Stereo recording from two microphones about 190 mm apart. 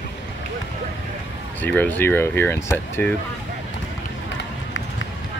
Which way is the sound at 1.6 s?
10° left (ahead or behind).